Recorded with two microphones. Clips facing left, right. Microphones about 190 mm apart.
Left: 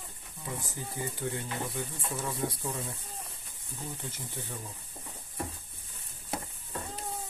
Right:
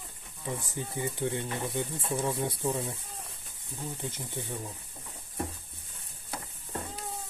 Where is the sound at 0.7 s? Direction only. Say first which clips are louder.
Right 3 dB; 20° right (ahead or behind).